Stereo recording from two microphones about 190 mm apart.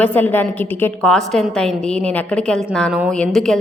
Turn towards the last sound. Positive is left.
turn(degrees=0)  # may be behind; listen again after turning